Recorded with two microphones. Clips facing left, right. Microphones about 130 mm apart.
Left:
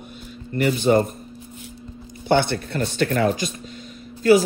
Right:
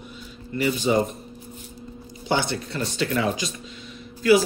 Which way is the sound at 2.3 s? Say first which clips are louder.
Left 5 dB; 55° left (ahead or behind).